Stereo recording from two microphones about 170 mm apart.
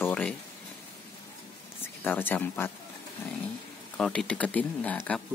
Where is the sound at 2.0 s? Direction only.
10° left (ahead or behind).